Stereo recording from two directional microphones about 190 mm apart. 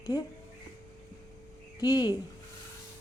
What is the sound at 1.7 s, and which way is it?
Speech, 20° left (ahead or behind).